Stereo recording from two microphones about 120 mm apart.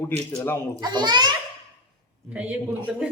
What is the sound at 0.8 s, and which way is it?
Speech, 35° right (ahead or behind).